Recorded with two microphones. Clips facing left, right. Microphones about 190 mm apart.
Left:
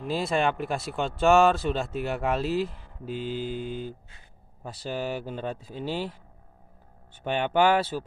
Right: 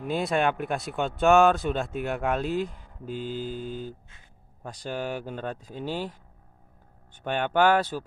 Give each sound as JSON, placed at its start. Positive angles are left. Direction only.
{"t": 0.0, "sound": "speech", "side_deg": 0}
{"t": 3.1, "sound": "mantra", "side_deg": -45}
{"t": 4.6, "sound": "speech", "side_deg": 5}
{"t": 5.8, "sound": "mantra", "side_deg": -45}
{"t": 7.2, "sound": "speech", "side_deg": 10}